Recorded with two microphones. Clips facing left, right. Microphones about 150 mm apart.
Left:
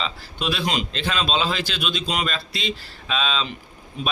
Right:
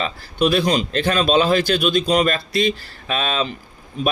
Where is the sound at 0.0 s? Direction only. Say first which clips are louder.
Right 8 dB; 45° right (ahead or behind).